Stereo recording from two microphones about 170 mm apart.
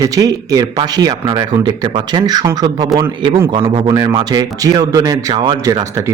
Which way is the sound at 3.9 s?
25° right (ahead or behind).